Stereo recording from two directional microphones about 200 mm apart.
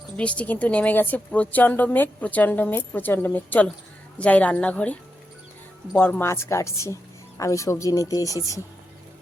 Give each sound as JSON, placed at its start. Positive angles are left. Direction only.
{"t": 0.2, "sound": "a woman's voice", "side_deg": 5}